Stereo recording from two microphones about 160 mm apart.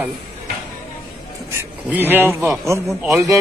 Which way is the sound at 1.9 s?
10° right (ahead or behind).